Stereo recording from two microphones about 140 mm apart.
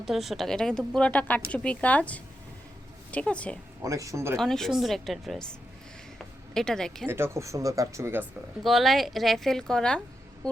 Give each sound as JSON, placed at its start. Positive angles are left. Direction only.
{"t": 0.0, "sound": "a woman's voice", "side_deg": 0}
{"t": 3.8, "sound": "speech", "side_deg": -25}
{"t": 4.4, "sound": "a woman's voice", "side_deg": 5}
{"t": 7.1, "sound": "speech", "side_deg": -20}
{"t": 8.6, "sound": "a woman's voice", "side_deg": 0}
{"t": 10.4, "sound": "a sound", "side_deg": 5}